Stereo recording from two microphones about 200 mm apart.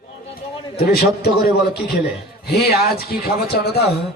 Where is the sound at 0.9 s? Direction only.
50° left (ahead or behind).